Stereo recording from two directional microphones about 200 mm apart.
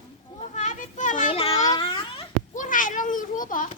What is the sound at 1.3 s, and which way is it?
Babbling, 25° left (ahead or behind).